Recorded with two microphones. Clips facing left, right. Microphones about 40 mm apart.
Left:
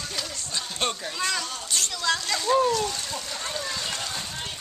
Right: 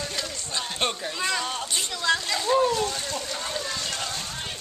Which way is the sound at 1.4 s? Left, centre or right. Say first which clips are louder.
Right 5 dB; right.